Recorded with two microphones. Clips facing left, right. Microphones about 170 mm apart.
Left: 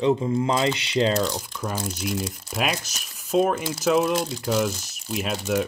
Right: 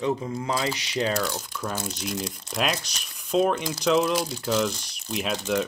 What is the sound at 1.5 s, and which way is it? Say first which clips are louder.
Speech: left 2 dB; 10° left (ahead or behind).